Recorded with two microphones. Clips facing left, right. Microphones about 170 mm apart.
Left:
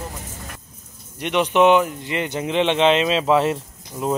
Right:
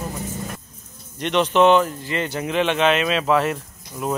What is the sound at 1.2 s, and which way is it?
Speech, 10° left (ahead or behind).